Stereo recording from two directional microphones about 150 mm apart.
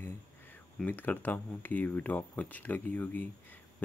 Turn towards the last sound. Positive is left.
turn(degrees=10)  # may be behind; listen again after turning